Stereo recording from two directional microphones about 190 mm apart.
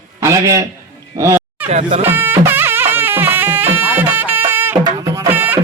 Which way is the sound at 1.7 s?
35° right (ahead or behind).